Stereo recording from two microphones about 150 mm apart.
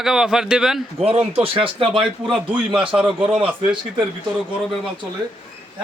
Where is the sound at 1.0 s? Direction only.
40° right (ahead or behind).